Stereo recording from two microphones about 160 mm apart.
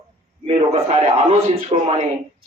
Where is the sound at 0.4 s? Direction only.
40° right (ahead or behind).